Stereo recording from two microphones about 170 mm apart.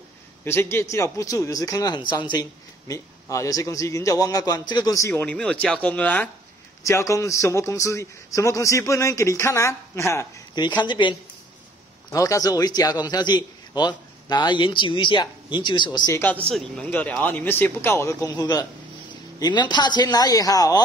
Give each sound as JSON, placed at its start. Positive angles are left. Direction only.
{"t": 0.5, "sound": "a man's voice", "side_deg": 15}
{"t": 10.8, "sound": "a man's voice", "side_deg": 30}
{"t": 16.4, "sound": "a man's voice", "side_deg": 5}